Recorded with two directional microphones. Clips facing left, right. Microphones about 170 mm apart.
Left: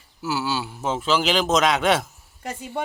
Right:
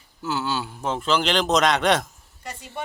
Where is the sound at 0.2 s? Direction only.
5° left (ahead or behind).